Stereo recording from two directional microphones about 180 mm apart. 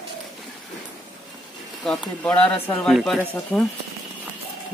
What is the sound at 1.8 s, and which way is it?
Speech, 5° left (ahead or behind).